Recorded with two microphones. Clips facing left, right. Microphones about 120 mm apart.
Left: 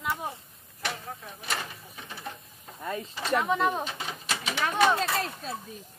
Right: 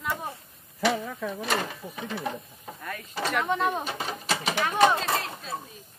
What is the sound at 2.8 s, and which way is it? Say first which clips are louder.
Speech: left 5 dB; 25° left (ahead or behind).